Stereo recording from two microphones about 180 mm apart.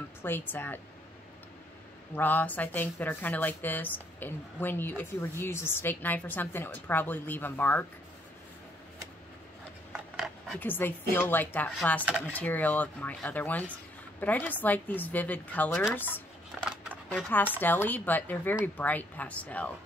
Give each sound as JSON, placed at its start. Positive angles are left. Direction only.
{"t": 0.2, "sound": "speech", "side_deg": 10}
{"t": 2.1, "sound": "speech", "side_deg": 10}
{"t": 9.9, "sound": "speech", "side_deg": 0}
{"t": 16.5, "sound": "a sound", "side_deg": 0}
{"t": 17.1, "sound": "speech", "side_deg": 10}